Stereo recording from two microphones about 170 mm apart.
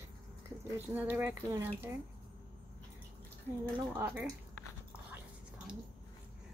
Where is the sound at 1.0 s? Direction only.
10° right (ahead or behind).